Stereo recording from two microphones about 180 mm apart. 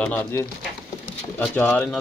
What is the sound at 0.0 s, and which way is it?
Speech, 10° left (ahead or behind).